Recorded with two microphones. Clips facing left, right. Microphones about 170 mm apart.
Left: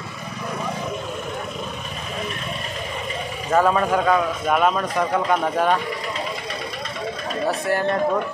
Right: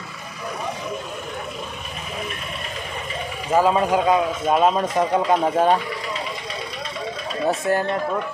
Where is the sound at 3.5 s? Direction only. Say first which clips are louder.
Right 1 dB; 15° right (ahead or behind).